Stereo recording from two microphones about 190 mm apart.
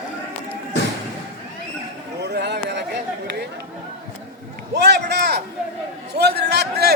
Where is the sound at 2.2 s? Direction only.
60° right (ahead or behind).